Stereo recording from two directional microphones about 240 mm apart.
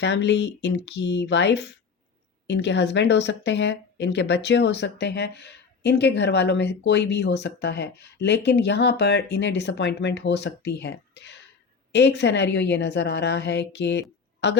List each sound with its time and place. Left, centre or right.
0.0 s speech: left